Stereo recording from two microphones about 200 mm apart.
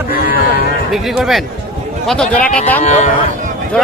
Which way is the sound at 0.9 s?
Centre (ahead or behind).